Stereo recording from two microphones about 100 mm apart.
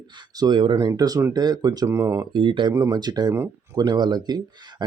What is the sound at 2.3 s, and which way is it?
Speech, 55° right (ahead or behind).